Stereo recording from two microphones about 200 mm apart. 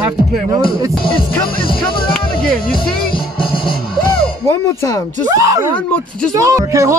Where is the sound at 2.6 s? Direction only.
50° left (ahead or behind).